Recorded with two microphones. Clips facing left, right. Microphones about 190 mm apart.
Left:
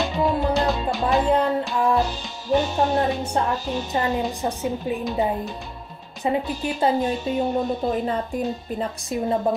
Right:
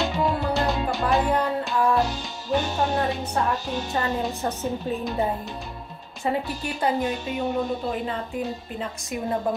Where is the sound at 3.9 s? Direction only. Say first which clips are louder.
Left 3 dB; 15° left (ahead or behind).